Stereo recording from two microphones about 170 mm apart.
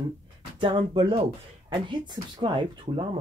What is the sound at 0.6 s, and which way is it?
Speech, 30° right (ahead or behind).